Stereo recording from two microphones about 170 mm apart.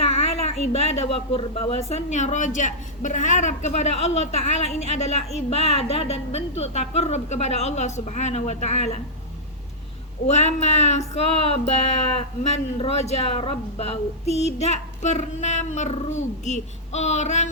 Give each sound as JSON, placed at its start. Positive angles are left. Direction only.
{"t": 0.0, "sound": "speech", "side_deg": 40}
{"t": 10.2, "sound": "speech", "side_deg": 40}